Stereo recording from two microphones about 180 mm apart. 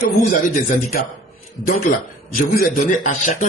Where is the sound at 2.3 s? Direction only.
50° left (ahead or behind).